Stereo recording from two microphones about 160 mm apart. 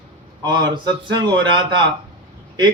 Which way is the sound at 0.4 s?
30° right (ahead or behind).